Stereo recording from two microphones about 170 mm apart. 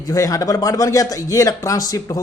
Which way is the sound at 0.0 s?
20° left (ahead or behind).